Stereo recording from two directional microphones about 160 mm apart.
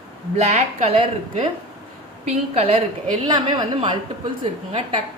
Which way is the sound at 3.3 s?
25° right (ahead or behind).